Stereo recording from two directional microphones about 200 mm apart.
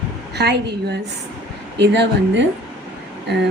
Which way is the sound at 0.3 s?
55° right (ahead or behind).